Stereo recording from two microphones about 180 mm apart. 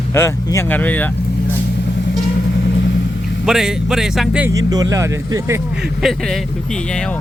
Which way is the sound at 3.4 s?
5° right (ahead or behind).